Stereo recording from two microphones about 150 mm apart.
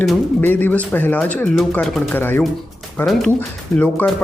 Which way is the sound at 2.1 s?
10° left (ahead or behind).